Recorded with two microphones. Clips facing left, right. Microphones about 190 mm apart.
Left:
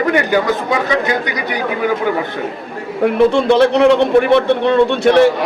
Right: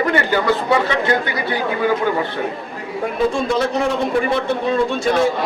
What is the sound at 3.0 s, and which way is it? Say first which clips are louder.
A man's voice: left 8 dB; 70° left (ahead or behind).